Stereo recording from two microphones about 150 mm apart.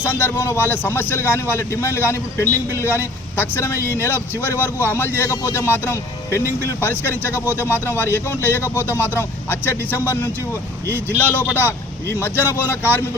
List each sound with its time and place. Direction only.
0.0 s a man's voice: 15° left (ahead or behind)
11.2 s a man's voice: 15° left (ahead or behind)